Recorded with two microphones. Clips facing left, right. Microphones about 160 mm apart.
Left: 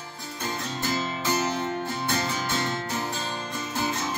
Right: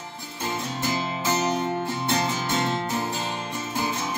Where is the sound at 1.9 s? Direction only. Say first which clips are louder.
Right 3 dB; 20° right (ahead or behind).